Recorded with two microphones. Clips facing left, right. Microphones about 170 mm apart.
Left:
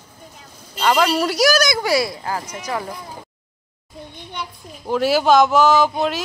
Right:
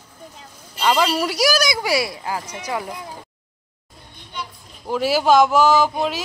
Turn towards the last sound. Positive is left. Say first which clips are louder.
# left 1 dB
turn(degrees=-5)  # may be behind; listen again after turning